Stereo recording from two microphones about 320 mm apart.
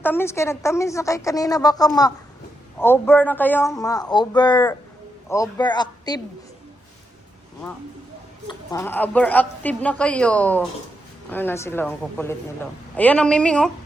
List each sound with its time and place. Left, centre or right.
0.0 s a woman's voice: centre
8.4 s a woman's voice: centre